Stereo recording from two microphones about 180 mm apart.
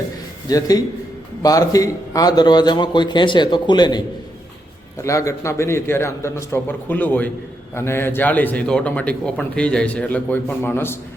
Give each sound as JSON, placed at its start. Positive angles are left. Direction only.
{"t": 0.4, "sound": "a man's voice", "side_deg": 20}
{"t": 5.0, "sound": "a man's voice", "side_deg": 15}